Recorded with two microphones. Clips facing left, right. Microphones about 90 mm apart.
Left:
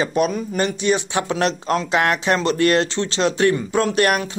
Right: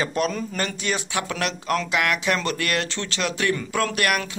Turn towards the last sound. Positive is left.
turn(degrees=30)  # may be behind; listen again after turning